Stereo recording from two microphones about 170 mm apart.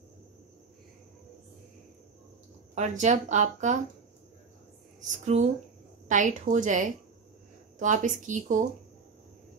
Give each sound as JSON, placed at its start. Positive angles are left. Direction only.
{"t": 2.7, "sound": "speech", "side_deg": -45}
{"t": 5.1, "sound": "speech", "side_deg": -40}